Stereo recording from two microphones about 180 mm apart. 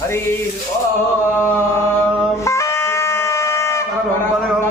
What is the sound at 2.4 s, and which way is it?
Shofar, 15° left (ahead or behind).